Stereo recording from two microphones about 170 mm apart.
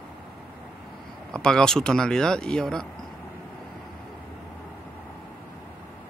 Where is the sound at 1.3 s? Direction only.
5° left (ahead or behind).